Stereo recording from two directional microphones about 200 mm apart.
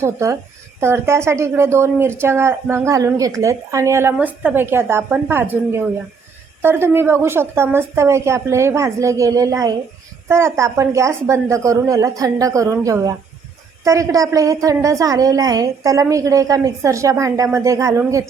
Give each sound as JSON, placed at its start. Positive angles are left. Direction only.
{"t": 0.0, "sound": "a woman's voice", "side_deg": -15}